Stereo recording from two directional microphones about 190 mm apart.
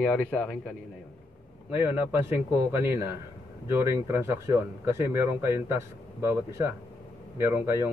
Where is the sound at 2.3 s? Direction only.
10° right (ahead or behind).